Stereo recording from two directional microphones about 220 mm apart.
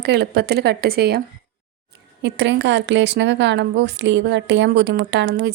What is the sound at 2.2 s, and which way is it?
Speech, 55° right (ahead or behind).